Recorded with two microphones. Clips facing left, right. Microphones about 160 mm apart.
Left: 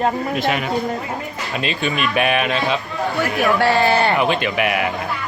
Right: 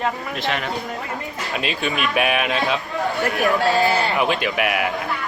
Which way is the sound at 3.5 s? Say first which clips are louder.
Left 4 dB; 75° left (ahead or behind).